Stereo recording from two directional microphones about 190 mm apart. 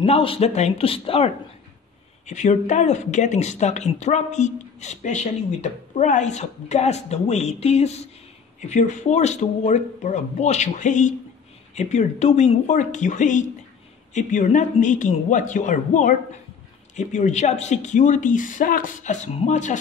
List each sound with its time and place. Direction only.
0.0 s speech: 30° left (ahead or behind)